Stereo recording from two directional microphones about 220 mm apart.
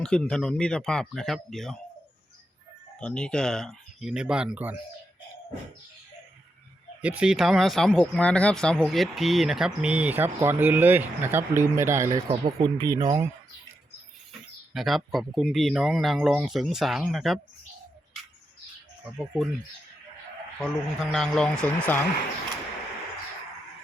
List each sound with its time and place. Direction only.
0.0 s speech: 5° left (ahead or behind)
3.0 s speech: 5° left (ahead or behind)
7.0 s speech: 5° right (ahead or behind)
14.7 s speech: centre (ahead or behind)
19.2 s speech: 5° right (ahead or behind)
20.6 s speech: centre (ahead or behind)